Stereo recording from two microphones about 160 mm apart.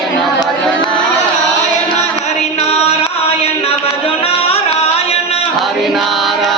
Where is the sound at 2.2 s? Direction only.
40° left (ahead or behind).